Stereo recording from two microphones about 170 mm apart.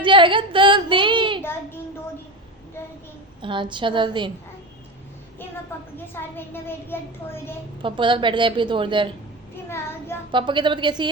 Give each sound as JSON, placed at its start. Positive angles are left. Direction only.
{"t": 0.0, "sound": "a woman's voice", "side_deg": -30}
{"t": 3.4, "sound": "a woman's voice", "side_deg": -30}
{"t": 5.7, "sound": "a child's voice", "side_deg": 15}
{"t": 7.8, "sound": "a woman's voice", "side_deg": -30}
{"t": 9.6, "sound": "a child's voice", "side_deg": 15}
{"t": 10.3, "sound": "a woman's voice", "side_deg": -30}